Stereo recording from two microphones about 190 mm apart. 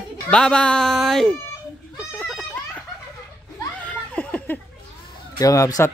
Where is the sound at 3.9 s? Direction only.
10° left (ahead or behind).